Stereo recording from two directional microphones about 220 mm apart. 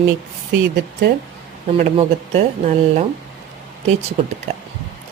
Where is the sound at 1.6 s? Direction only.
30° right (ahead or behind).